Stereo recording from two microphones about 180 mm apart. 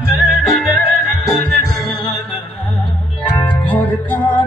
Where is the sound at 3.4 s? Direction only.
10° left (ahead or behind).